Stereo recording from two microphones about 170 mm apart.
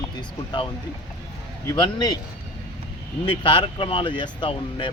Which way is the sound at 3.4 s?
30° left (ahead or behind).